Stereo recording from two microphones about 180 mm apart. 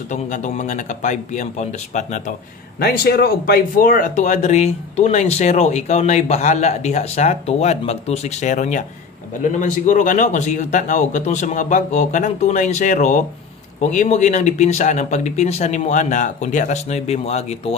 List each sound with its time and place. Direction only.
0.1 s speech: 45° left (ahead or behind)
2.8 s speech: 60° left (ahead or behind); by 17.7 s 35° left (ahead or behind)